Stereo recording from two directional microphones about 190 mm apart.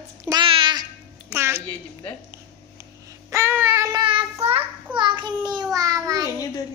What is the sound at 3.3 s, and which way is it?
Child singing, 15° right (ahead or behind).